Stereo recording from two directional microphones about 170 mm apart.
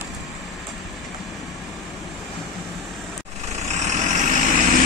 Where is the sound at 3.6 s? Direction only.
40° right (ahead or behind).